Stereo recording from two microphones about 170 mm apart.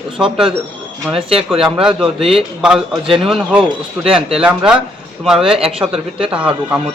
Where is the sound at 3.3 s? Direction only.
Centre (ahead or behind).